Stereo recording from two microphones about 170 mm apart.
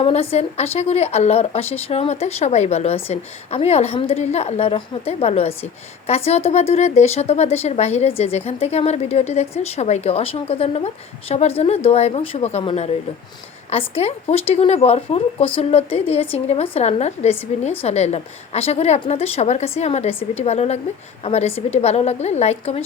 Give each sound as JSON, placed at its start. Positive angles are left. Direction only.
{"t": 0.0, "sound": "a woman's voice", "side_deg": 35}